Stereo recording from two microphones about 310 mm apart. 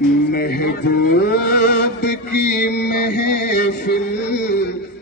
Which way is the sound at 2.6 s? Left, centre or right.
Left.